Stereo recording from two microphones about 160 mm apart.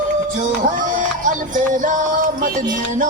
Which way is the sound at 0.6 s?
55° right (ahead or behind).